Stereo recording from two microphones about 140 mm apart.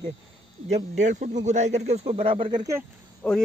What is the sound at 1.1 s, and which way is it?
Speech, 60° right (ahead or behind).